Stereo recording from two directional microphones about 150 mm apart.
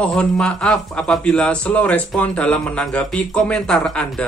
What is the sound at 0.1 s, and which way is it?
Speech, 5° left (ahead or behind).